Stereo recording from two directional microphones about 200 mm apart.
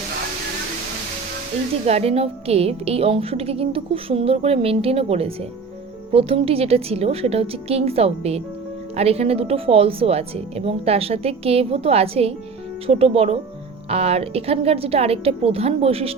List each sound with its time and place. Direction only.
1.9 s a woman's voice: 30° right (ahead or behind)